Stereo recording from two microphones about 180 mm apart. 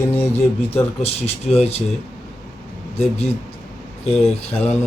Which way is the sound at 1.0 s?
35° left (ahead or behind).